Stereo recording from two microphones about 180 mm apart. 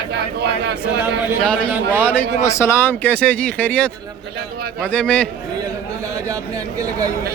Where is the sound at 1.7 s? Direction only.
10° right (ahead or behind).